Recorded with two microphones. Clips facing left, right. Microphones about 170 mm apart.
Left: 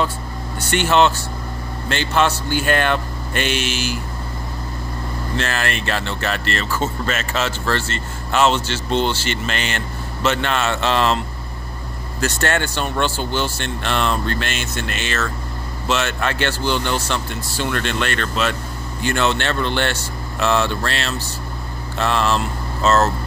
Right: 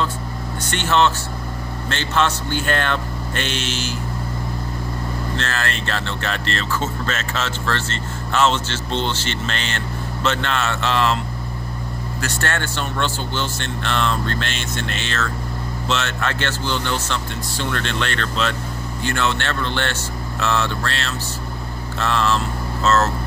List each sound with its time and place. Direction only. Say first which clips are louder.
0.7 s speech: left 3 dB; 10° left (ahead or behind)
5.4 s speech: left 5 dB; 15° left (ahead or behind)
12.2 s speech: left 5 dB; 20° left (ahead or behind)